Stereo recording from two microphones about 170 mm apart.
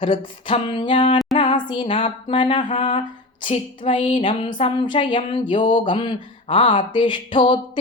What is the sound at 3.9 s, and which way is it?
Music, 30° left (ahead or behind).